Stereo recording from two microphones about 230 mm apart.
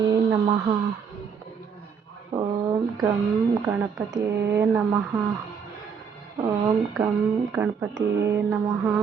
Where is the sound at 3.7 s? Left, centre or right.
Centre.